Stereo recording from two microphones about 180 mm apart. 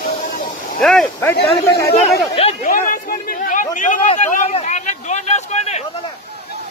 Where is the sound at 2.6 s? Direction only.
50° left (ahead or behind).